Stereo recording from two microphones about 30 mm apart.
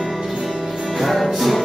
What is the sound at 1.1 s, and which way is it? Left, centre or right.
Music, centre.